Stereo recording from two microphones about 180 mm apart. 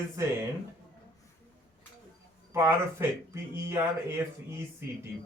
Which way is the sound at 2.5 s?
15° right (ahead or behind).